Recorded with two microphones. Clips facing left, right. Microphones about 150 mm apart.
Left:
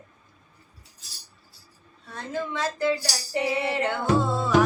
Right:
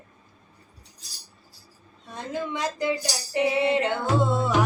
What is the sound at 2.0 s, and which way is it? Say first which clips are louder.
Female singing: even; 15° right (ahead or behind).